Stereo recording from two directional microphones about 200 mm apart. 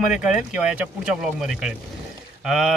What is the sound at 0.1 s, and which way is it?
Speech, 5° right (ahead or behind).